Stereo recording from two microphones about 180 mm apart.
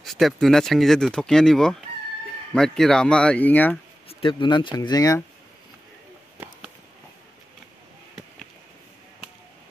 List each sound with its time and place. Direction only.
0.0 s speech: centre (ahead or behind)
4.1 s speech: 30° left (ahead or behind)